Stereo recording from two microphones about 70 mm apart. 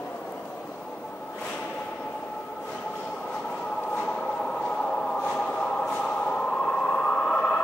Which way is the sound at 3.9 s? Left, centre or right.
Left.